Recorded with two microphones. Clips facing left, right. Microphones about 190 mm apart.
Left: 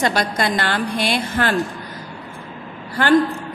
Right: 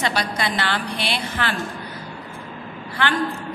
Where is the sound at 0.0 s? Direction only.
45° left (ahead or behind).